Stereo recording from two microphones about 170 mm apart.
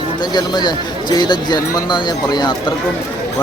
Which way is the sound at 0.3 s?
25° left (ahead or behind).